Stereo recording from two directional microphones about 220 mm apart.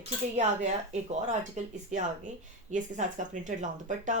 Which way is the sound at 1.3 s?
35° right (ahead or behind).